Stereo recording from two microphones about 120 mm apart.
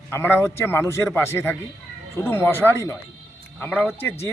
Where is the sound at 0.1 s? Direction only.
20° left (ahead or behind).